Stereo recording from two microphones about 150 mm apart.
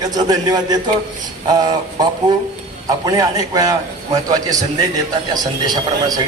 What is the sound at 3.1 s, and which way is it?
A man's voice, 25° right (ahead or behind).